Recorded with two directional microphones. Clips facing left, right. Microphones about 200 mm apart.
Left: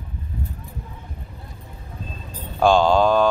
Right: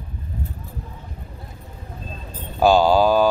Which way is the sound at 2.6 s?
5° right (ahead or behind).